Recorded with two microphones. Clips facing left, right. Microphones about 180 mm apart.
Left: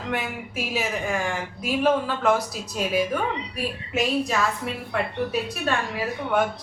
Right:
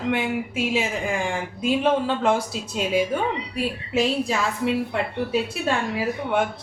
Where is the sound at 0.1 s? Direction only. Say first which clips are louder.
Right 4 dB; 25° right (ahead or behind).